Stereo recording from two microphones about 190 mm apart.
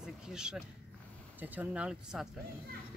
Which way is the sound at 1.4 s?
10° right (ahead or behind).